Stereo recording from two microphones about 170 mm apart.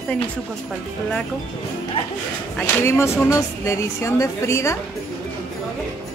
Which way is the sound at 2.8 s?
15° left (ahead or behind).